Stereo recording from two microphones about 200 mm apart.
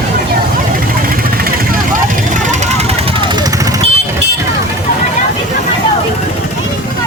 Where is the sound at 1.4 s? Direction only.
45° right (ahead or behind).